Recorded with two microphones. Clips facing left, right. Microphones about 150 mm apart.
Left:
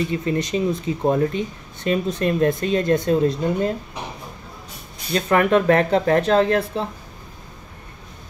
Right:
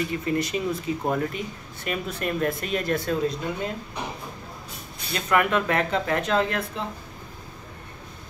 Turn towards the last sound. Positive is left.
turn(degrees=35)  # may be behind; listen again after turning